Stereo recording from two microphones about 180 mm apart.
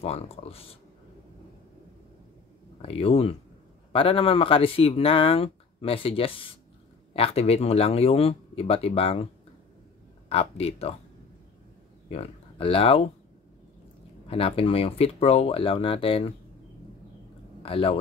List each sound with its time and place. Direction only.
0.0 s speech: 35° left (ahead or behind)
2.8 s speech: 30° left (ahead or behind)
10.3 s speech: 35° left (ahead or behind)
12.1 s speech: 30° left (ahead or behind)
14.2 s speech: 30° left (ahead or behind)
17.6 s speech: 30° left (ahead or behind)